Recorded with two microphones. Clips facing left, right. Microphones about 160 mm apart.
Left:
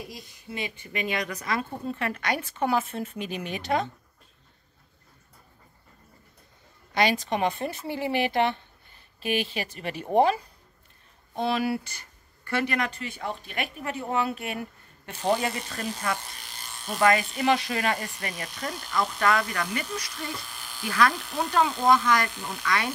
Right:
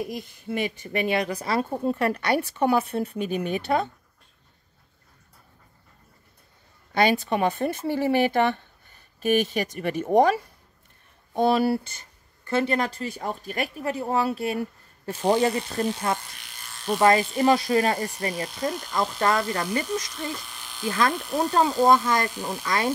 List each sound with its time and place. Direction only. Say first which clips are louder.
0.1 s speech: right 8 dB; 50° right (ahead or behind)
7.2 s speech: right 3 dB; 40° right (ahead or behind)
11.3 s speech: right 5 dB; 40° right (ahead or behind)
20.8 s speech: right 1 dB; 25° right (ahead or behind)